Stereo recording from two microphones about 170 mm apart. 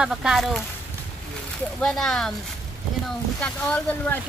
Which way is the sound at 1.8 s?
5° left (ahead or behind).